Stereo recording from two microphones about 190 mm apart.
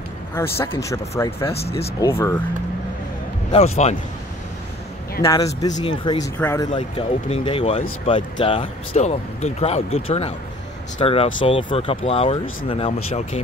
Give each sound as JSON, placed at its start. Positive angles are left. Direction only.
{"t": 0.3, "sound": "speech", "side_deg": 10}
{"t": 1.4, "sound": "speech", "side_deg": 30}
{"t": 2.0, "sound": "speech", "side_deg": 15}
{"t": 3.5, "sound": "speech", "side_deg": 35}
{"t": 5.2, "sound": "speech", "side_deg": 20}
{"t": 6.7, "sound": "speech", "side_deg": 25}